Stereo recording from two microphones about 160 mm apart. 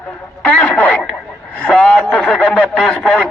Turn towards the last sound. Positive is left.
turn(degrees=5)  # may be behind; listen again after turning